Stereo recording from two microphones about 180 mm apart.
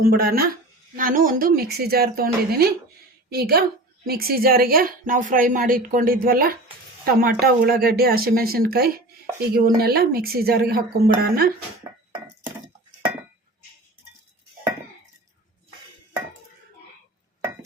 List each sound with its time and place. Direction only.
0.0 s a woman's voice: 55° right (ahead or behind)